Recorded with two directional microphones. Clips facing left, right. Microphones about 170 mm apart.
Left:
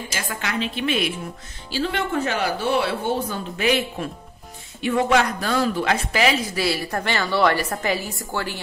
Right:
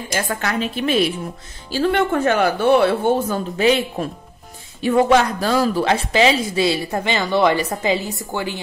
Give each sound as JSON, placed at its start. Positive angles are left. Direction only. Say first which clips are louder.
{"t": 0.1, "sound": "a woman's voice", "louder": "right 7 dB", "side_deg": -45}
{"t": 1.7, "sound": "speech", "louder": "right 6 dB", "side_deg": -55}
{"t": 3.5, "sound": "a woman's voice", "louder": "right 4 dB", "side_deg": -30}